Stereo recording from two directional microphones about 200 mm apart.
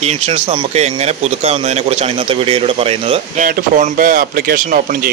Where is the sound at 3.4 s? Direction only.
40° right (ahead or behind).